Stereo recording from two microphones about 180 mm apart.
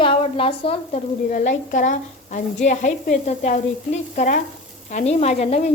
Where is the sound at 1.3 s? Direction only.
45° left (ahead or behind).